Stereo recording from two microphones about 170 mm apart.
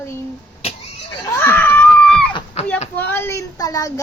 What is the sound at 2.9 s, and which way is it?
Speech, 10° left (ahead or behind).